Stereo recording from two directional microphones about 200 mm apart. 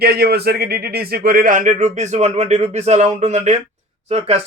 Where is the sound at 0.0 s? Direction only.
50° right (ahead or behind).